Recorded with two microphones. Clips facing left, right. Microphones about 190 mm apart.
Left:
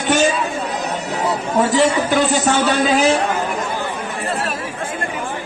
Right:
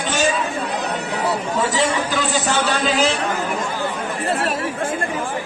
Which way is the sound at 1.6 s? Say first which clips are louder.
Left 6 dB; 60° left (ahead or behind).